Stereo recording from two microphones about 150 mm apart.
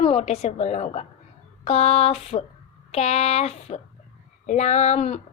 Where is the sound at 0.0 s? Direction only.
45° left (ahead or behind).